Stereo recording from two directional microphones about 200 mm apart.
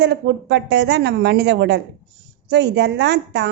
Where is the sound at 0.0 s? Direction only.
60° right (ahead or behind).